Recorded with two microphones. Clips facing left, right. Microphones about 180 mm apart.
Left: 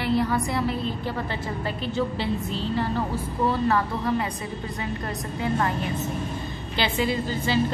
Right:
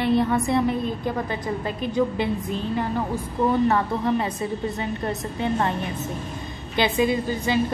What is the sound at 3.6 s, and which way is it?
A woman's voice, 25° right (ahead or behind).